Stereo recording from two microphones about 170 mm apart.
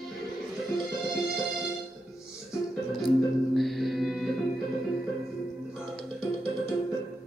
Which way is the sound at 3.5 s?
Centre (ahead or behind).